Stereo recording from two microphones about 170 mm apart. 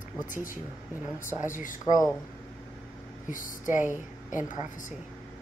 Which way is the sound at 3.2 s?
50° left (ahead or behind).